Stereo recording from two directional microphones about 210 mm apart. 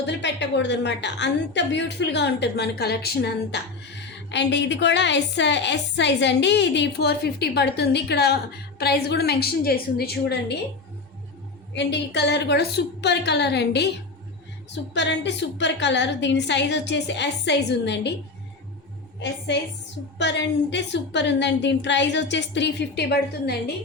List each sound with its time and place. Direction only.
0.0 s a woman's voice: 55° left (ahead or behind)
11.7 s a woman's voice: 55° left (ahead or behind)
14.9 s a woman's voice: 55° left (ahead or behind)
20.1 s a woman's voice: 55° left (ahead or behind)